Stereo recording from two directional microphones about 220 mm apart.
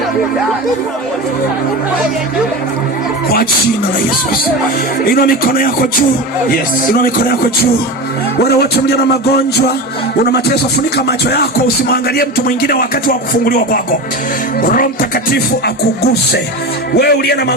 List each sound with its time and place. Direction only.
5.0 s speech: 40° left (ahead or behind)
8.4 s music: 45° left (ahead or behind)
10.9 s music: 45° left (ahead or behind)
12.1 s speech: 45° left (ahead or behind)
16.9 s music: 45° left (ahead or behind)